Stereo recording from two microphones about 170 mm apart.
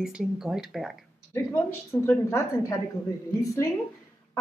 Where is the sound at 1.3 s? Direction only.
15° left (ahead or behind).